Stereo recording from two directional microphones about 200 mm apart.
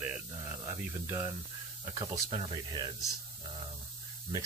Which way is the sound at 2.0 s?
25° right (ahead or behind).